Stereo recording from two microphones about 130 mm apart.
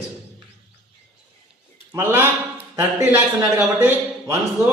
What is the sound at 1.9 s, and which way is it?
A man's voice, 20° right (ahead or behind).